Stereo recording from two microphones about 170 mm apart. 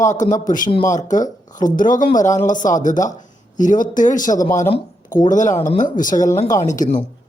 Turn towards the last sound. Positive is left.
turn(degrees=50)  # may be behind; listen again after turning